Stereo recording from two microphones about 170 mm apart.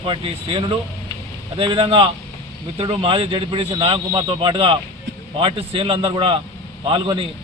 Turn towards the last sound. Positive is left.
turn(degrees=-30)  # may be behind; listen again after turning